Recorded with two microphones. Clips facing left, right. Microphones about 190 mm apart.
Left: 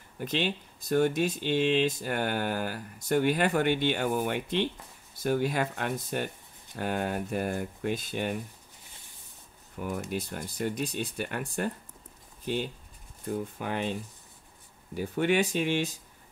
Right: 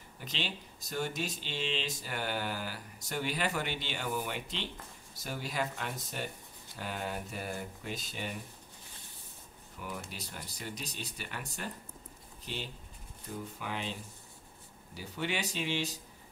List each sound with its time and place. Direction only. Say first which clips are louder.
0.2 s speech: left 10 dB; 55° left (ahead or behind)
9.8 s speech: left 10 dB; 50° left (ahead or behind)
15.0 s speech: left 10 dB; 55° left (ahead or behind)